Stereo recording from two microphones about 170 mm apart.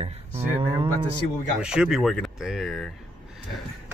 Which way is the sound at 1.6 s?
5° right (ahead or behind).